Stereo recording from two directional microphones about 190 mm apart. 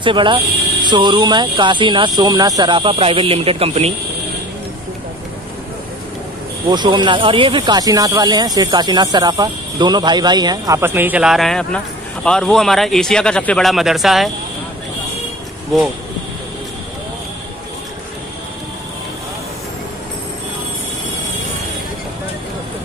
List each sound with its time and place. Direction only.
0.0 s speech: 25° right (ahead or behind)
6.7 s speech: 25° right (ahead or behind); by 14.3 s centre (ahead or behind)